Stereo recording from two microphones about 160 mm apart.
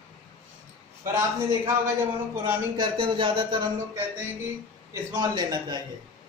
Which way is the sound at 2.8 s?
30° right (ahead or behind).